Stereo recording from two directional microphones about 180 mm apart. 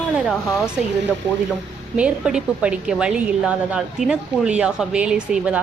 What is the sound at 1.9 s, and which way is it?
A woman's voice, 5° right (ahead or behind).